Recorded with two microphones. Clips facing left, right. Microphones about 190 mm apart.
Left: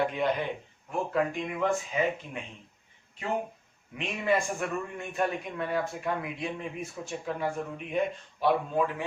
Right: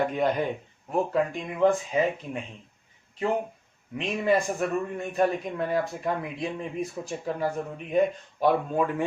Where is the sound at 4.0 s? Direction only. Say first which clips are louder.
Right 4 dB; 35° right (ahead or behind).